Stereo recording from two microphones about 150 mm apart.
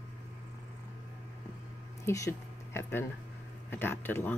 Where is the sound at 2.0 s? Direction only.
20° left (ahead or behind).